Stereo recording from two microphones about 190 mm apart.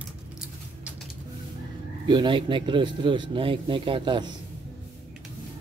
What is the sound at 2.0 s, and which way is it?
Speech, 25° right (ahead or behind).